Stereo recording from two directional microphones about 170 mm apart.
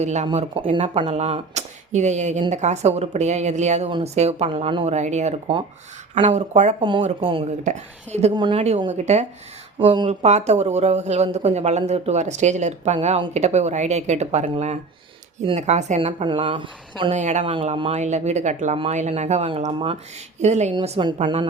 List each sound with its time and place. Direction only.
0.0 s speech: 40° right (ahead or behind)
0.3 s speech: 30° right (ahead or behind)
6.7 s speech: 30° right (ahead or behind)
7.6 s a woman's voice: 45° right (ahead or behind)
16.2 s speech: 30° right (ahead or behind)
17.2 s a woman's voice: 45° right (ahead or behind)